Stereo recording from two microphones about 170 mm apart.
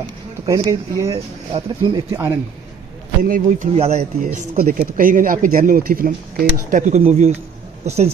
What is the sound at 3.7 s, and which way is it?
Speech, 40° right (ahead or behind).